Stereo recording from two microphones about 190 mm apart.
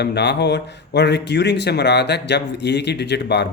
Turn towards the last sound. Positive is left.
turn(degrees=65)  # may be behind; listen again after turning